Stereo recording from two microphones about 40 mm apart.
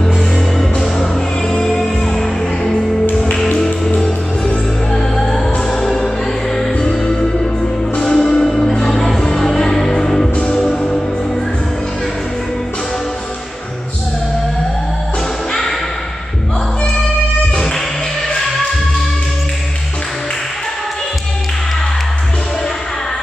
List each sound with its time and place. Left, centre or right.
0.6 s music: centre
3.1 s music: left
3.5 s music: centre